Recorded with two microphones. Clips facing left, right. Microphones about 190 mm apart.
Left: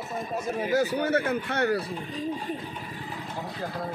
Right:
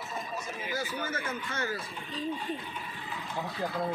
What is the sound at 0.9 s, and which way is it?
Speech, 65° left (ahead or behind).